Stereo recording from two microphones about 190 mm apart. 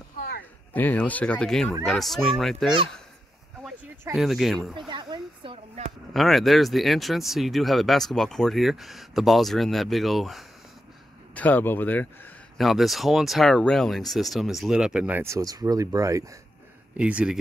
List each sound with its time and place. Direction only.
0.7 s speech: 10° left (ahead or behind)
4.1 s speech: centre (ahead or behind)
4.7 s a sound: 25° right (ahead or behind)
6.1 s speech: centre (ahead or behind); by 16.3 s 15° right (ahead or behind)
16.9 s speech: 5° right (ahead or behind)